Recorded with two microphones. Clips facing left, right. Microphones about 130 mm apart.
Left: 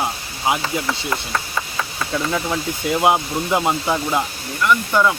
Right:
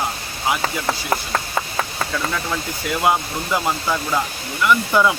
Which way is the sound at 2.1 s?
25° left (ahead or behind).